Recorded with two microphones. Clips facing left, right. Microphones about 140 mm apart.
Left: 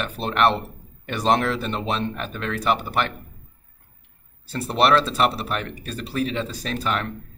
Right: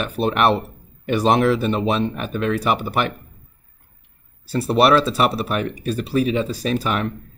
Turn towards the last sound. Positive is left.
turn(degrees=-10)  # may be behind; listen again after turning